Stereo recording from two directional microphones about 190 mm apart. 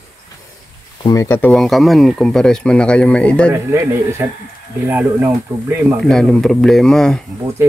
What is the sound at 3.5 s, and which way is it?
Speech, 15° right (ahead or behind).